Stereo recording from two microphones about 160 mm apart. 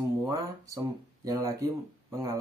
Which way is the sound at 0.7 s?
20° right (ahead or behind).